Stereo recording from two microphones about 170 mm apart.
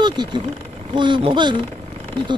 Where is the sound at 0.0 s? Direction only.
25° right (ahead or behind).